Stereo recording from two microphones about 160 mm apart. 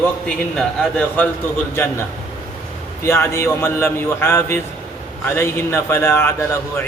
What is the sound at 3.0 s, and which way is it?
A man's voice, 15° left (ahead or behind).